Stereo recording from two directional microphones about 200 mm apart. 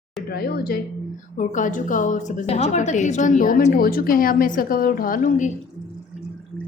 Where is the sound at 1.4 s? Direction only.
40° left (ahead or behind).